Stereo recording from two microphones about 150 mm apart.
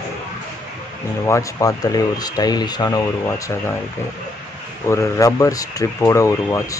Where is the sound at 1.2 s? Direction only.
20° left (ahead or behind).